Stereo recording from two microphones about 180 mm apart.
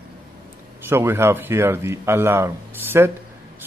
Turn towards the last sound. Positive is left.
turn(degrees=-10)  # may be behind; listen again after turning